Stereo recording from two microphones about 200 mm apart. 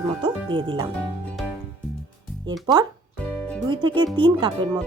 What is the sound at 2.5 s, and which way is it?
Speech, 20° right (ahead or behind).